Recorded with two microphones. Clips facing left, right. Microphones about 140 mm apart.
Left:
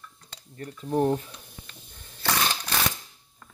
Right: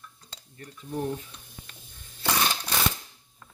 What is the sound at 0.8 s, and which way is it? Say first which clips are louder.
Speech: left 7 dB; 55° left (ahead or behind).